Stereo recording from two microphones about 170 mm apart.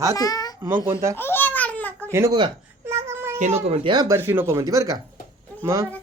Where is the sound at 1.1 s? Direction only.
15° left (ahead or behind).